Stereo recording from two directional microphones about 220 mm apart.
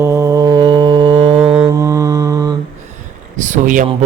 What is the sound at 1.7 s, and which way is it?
Mantra, 15° right (ahead or behind).